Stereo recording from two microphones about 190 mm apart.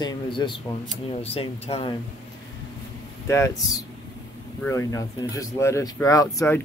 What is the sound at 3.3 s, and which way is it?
Speech, 15° left (ahead or behind).